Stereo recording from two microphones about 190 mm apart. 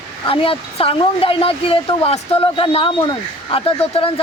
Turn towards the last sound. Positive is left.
turn(degrees=30)  # may be behind; listen again after turning